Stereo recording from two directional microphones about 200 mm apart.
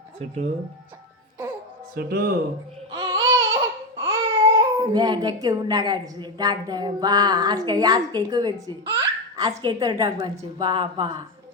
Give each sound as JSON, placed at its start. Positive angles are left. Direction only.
{"t": 2.0, "sound": "speech", "side_deg": -50}
{"t": 2.9, "sound": "a sound", "side_deg": -25}
{"t": 3.9, "sound": "speech", "side_deg": -15}